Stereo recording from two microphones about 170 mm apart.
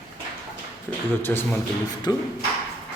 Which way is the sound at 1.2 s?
15° left (ahead or behind).